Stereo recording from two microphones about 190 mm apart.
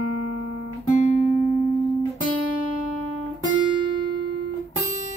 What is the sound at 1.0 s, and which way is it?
Music, 40° left (ahead or behind).